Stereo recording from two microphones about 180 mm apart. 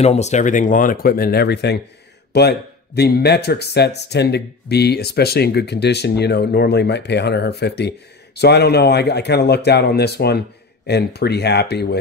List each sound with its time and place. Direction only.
0.0 s speech: 40° left (ahead or behind); by 12.0 s 65° left (ahead or behind)